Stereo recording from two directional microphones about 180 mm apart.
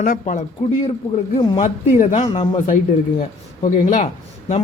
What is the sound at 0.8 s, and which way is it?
Speech, 30° left (ahead or behind).